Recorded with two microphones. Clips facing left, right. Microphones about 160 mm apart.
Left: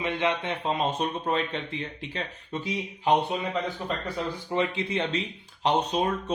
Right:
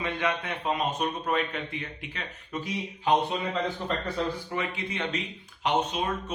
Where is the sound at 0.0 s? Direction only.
20° left (ahead or behind).